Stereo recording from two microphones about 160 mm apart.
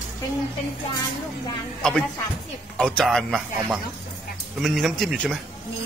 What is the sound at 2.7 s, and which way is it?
Speech, 5° left (ahead or behind).